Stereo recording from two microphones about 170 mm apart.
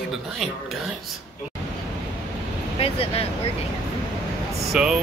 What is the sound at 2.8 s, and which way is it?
Speech, 35° left (ahead or behind).